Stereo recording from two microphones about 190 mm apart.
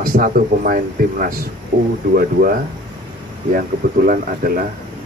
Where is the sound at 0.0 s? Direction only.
50° right (ahead or behind).